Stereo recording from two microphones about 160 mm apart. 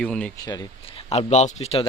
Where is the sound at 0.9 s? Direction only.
35° left (ahead or behind).